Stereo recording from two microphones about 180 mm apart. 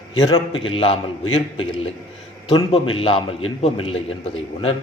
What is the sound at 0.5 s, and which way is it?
Speech, 90° left.